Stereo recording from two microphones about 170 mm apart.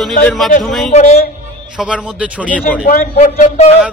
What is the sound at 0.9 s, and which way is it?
Speech, 40° left (ahead or behind).